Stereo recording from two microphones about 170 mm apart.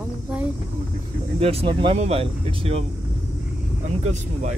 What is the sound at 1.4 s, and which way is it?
Speech, 35° right (ahead or behind).